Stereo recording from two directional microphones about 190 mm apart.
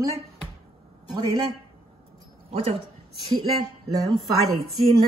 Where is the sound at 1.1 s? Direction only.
20° right (ahead or behind).